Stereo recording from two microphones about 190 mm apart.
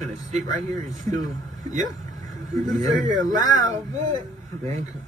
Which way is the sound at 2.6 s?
40° right (ahead or behind).